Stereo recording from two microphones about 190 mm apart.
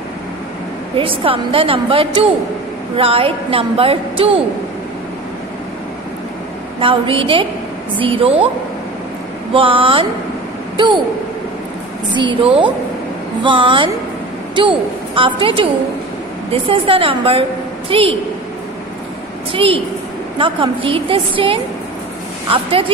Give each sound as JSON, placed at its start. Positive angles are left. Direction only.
{"t": 0.9, "sound": "a woman's voice", "side_deg": -30}
{"t": 6.8, "sound": "a woman's voice", "side_deg": -30}
{"t": 9.5, "sound": "a woman's voice", "side_deg": -30}
{"t": 12.1, "sound": "a woman's voice", "side_deg": -25}
{"t": 19.5, "sound": "a woman's voice", "side_deg": -30}